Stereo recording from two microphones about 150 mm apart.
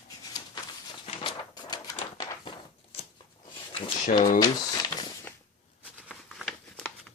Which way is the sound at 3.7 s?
35° left (ahead or behind).